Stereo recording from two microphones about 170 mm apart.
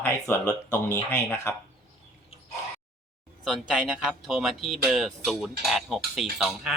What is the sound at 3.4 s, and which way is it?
Speech, 5° right (ahead or behind).